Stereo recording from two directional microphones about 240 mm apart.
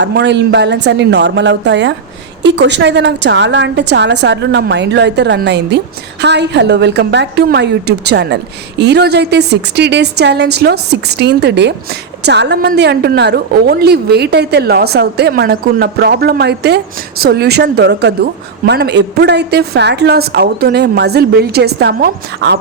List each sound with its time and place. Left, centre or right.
0.0 s a woman's voice: right